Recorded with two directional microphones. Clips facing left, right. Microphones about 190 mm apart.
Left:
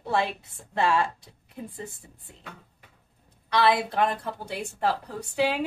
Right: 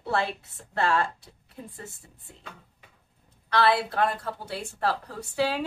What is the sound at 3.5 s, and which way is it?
A woman's voice, 15° left (ahead or behind).